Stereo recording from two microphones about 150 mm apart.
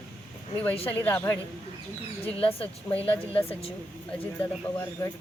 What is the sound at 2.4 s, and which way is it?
A woman's voice, 40° left (ahead or behind).